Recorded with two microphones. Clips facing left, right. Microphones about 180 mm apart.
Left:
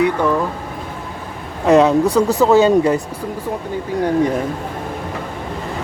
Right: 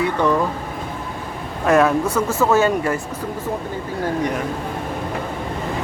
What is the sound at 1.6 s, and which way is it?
Speech, 20° left (ahead or behind).